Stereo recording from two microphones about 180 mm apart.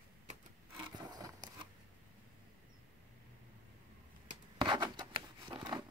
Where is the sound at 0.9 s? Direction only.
25° right (ahead or behind).